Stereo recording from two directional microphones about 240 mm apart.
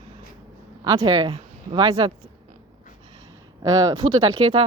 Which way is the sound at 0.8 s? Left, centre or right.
Centre.